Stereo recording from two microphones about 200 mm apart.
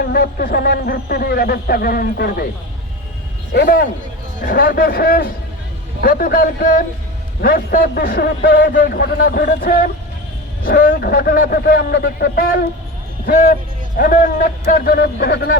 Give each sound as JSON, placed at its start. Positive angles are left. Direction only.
{"t": 0.0, "sound": "speech", "side_deg": 50}
{"t": 3.5, "sound": "a man's voice", "side_deg": 50}